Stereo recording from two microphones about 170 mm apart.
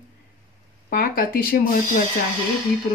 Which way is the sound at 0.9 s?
60° left (ahead or behind).